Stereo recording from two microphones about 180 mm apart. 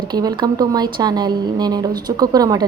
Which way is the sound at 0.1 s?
25° right (ahead or behind).